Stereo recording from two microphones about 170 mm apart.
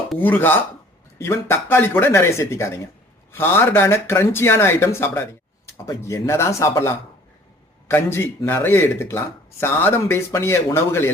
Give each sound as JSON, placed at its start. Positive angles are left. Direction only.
{"t": 0.2, "sound": "speech", "side_deg": 10}